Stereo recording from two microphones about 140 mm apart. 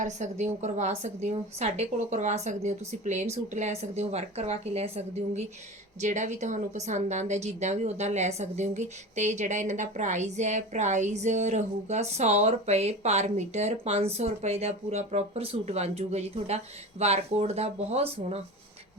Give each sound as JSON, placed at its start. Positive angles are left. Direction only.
{"t": 0.0, "sound": "speech", "side_deg": -55}